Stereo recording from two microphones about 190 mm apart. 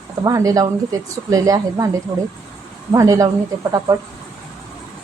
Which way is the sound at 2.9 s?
15° right (ahead or behind).